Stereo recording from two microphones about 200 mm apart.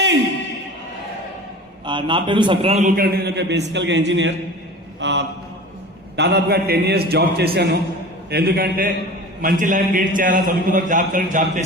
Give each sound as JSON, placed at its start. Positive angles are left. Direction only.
{"t": 1.8, "sound": "a man's voice", "side_deg": -25}